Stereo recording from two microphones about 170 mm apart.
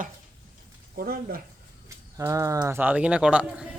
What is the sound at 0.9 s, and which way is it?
Speech, 60° right (ahead or behind).